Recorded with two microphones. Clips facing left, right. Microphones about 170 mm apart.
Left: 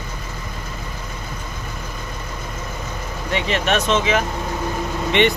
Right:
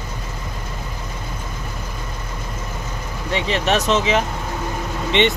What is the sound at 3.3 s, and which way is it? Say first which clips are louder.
Speech: right 1 dB; 35° right (ahead or behind).